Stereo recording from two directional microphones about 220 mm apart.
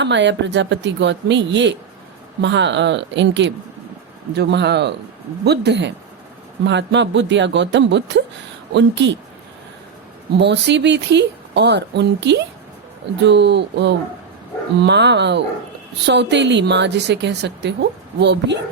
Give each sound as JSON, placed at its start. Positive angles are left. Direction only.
{"t": 0.0, "sound": "a woman's voice", "side_deg": -55}
{"t": 10.3, "sound": "a woman's voice", "side_deg": -50}